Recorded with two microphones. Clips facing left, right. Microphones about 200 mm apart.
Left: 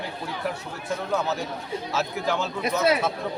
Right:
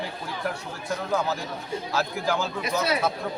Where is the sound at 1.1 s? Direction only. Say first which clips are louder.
Even; 5° left (ahead or behind).